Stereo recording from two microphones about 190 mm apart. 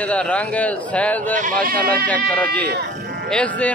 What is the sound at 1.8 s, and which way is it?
Speech, 50° right (ahead or behind).